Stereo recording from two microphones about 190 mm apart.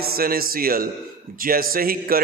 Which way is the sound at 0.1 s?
50° right (ahead or behind).